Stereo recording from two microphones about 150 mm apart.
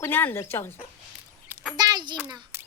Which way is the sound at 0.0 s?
15° left (ahead or behind).